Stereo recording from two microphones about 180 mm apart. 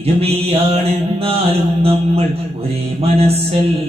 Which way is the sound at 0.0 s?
35° right (ahead or behind).